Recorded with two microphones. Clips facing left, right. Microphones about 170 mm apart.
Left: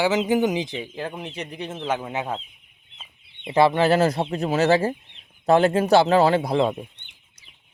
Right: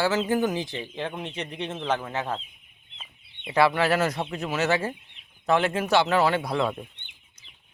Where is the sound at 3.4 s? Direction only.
25° left (ahead or behind).